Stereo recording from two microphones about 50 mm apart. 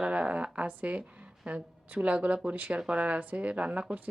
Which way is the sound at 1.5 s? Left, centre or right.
Right.